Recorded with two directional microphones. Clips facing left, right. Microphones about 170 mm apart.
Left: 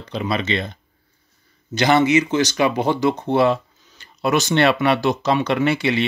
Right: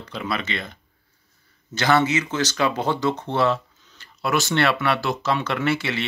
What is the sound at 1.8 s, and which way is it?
Speech, 15° left (ahead or behind).